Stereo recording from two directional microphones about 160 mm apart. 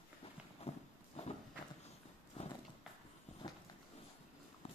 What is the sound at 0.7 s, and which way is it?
Horse, 40° left (ahead or behind).